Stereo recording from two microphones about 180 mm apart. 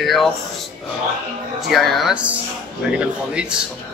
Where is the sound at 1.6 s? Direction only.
Centre (ahead or behind).